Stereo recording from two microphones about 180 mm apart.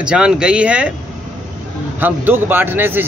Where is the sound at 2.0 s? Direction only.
10° right (ahead or behind).